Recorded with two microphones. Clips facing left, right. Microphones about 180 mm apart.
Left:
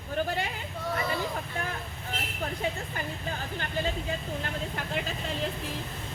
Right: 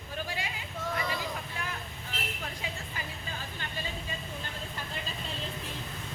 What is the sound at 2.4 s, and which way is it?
Speech, 50° left (ahead or behind).